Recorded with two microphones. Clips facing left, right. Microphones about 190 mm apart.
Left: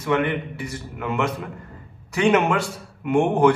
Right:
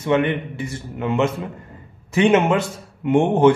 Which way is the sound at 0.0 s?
25° right (ahead or behind).